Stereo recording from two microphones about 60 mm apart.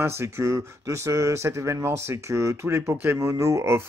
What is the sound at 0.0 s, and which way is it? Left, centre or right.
Speech, right.